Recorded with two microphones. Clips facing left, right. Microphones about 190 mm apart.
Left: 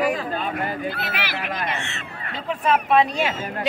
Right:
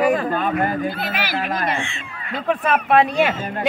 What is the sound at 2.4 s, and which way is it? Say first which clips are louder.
Speech: right 2 dB; 60° right (ahead or behind).